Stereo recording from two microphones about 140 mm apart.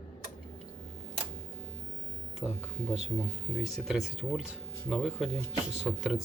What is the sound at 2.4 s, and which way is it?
Speech, 5° right (ahead or behind).